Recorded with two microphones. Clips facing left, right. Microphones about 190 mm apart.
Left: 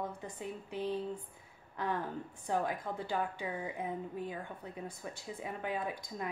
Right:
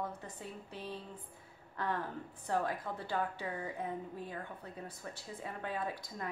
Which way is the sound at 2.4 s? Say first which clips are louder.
Left 1 dB; 15° left (ahead or behind).